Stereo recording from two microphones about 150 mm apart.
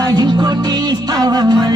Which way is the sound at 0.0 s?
30° right (ahead or behind).